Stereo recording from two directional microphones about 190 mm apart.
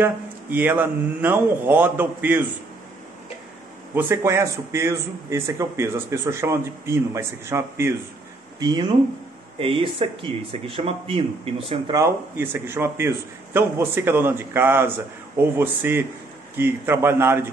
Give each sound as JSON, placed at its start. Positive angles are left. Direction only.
{"t": 0.0, "sound": "a man's voice", "side_deg": -10}
{"t": 3.9, "sound": "a man's voice", "side_deg": -10}
{"t": 12.0, "sound": "a man's voice", "side_deg": -15}